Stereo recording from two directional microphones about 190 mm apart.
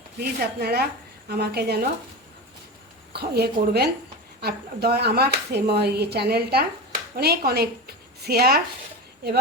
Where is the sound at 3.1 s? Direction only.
60° right (ahead or behind).